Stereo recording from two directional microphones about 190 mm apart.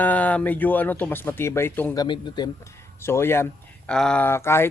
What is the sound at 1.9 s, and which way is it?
Speech, 20° left (ahead or behind).